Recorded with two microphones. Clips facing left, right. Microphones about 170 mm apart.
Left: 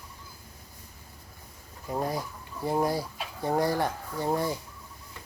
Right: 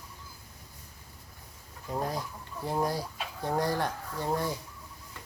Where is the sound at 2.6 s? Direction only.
10° left (ahead or behind).